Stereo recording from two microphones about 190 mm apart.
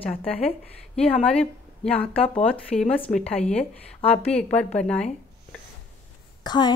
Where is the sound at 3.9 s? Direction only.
35° left (ahead or behind).